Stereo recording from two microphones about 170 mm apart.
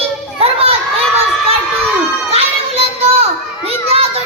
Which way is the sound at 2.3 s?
35° right (ahead or behind).